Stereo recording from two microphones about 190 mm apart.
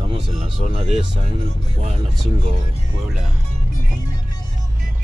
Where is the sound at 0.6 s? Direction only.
35° right (ahead or behind).